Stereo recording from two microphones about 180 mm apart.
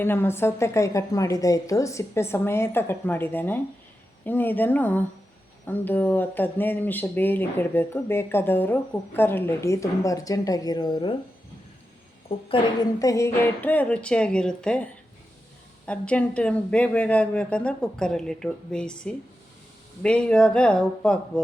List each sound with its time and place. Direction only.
0.0 s speech: 10° left (ahead or behind)
12.3 s a woman's voice: 30° left (ahead or behind)
13.0 s speech: 15° left (ahead or behind)
15.9 s speech: 5° left (ahead or behind)